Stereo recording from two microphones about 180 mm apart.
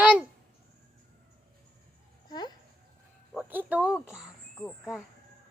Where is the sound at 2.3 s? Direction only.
25° left (ahead or behind).